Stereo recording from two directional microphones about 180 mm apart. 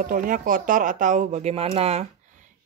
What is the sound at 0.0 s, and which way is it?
Speech, 50° right (ahead or behind).